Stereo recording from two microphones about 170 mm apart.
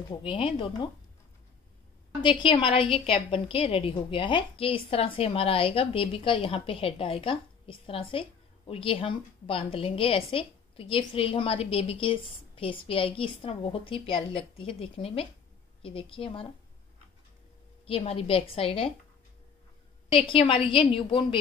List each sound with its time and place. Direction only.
0.1 s speech: 30° left (ahead or behind)
2.2 s a woman's voice: 30° left (ahead or behind)
17.8 s a woman's voice: 35° left (ahead or behind)
20.1 s a woman's voice: 30° left (ahead or behind)